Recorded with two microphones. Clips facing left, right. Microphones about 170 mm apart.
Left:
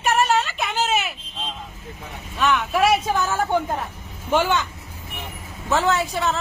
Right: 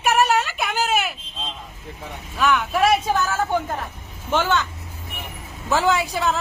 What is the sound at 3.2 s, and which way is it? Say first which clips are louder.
Speech: left 1 dB; 15° left (ahead or behind).